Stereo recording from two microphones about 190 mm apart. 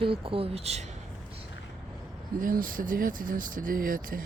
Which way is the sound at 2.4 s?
45° right (ahead or behind).